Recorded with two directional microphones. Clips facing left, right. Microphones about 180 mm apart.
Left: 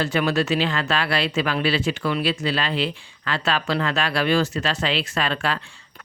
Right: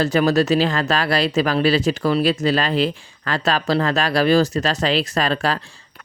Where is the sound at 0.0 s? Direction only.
40° right (ahead or behind).